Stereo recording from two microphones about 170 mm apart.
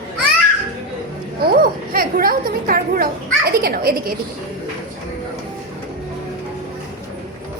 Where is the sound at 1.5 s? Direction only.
60° right (ahead or behind).